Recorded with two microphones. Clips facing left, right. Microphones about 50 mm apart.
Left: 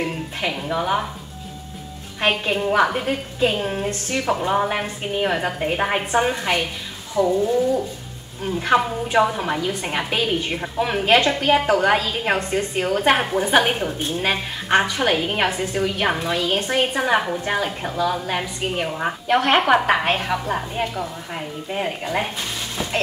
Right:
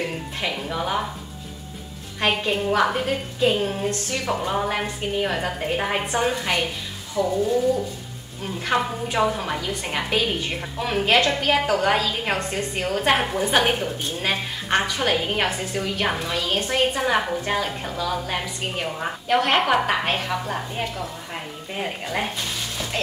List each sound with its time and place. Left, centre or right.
0.0 s speech: centre
2.1 s a woman's voice: centre
7.2 s a woman's voice: centre